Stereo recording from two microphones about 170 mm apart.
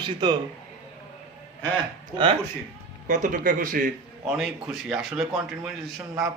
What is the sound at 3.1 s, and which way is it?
Speech, 50° right (ahead or behind).